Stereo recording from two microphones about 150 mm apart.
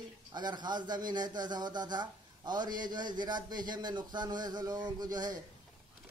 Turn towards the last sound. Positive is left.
turn(degrees=-25)  # may be behind; listen again after turning